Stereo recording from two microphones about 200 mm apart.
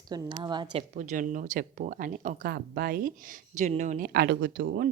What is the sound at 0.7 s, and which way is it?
Speech, 35° right (ahead or behind).